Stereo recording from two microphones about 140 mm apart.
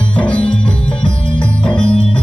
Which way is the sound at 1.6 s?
40° left (ahead or behind).